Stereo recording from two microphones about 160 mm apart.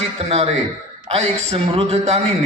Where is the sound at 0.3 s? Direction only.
40° right (ahead or behind).